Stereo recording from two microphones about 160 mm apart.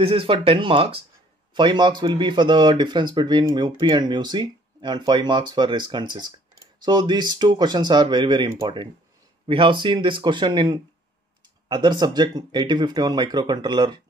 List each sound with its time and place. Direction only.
0.0 s speech: 35° right (ahead or behind)